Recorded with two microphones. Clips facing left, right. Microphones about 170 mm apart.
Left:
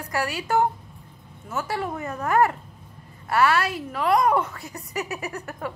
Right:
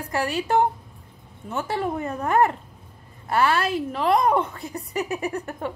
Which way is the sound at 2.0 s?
30° right (ahead or behind).